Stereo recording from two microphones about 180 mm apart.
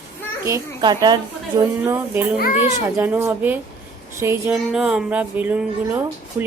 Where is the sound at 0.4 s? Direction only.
20° right (ahead or behind).